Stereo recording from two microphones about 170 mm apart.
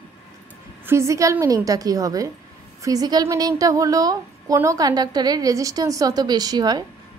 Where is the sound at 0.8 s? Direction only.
15° right (ahead or behind).